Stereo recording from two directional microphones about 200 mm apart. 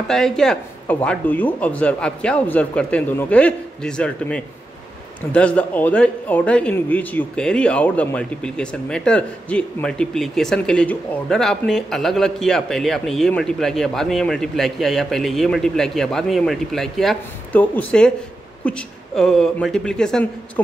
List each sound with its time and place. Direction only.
0.1 s a man's voice: centre (ahead or behind)